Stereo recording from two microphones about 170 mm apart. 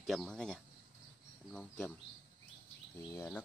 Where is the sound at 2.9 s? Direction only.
20° left (ahead or behind).